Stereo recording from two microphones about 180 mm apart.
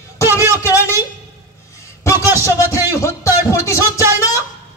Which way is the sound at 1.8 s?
15° left (ahead or behind).